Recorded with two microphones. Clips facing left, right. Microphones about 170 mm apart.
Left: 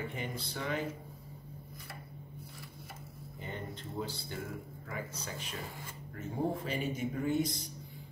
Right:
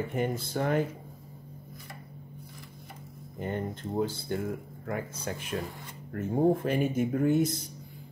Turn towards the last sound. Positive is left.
turn(degrees=-50)  # may be behind; listen again after turning